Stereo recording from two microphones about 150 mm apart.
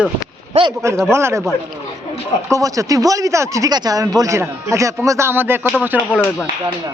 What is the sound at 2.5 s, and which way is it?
Speech, 20° right (ahead or behind).